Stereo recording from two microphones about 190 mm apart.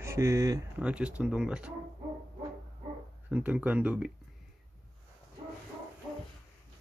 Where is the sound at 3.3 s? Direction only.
5° right (ahead or behind).